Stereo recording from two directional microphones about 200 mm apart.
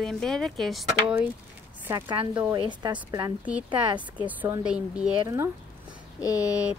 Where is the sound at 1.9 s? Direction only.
20° right (ahead or behind).